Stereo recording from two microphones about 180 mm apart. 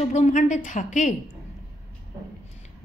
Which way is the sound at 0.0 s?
40° left (ahead or behind).